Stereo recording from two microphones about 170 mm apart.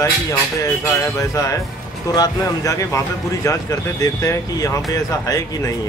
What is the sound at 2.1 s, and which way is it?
Speech, 20° left (ahead or behind).